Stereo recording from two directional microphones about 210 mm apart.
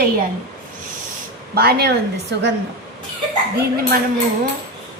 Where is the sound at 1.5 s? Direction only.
50° right (ahead or behind).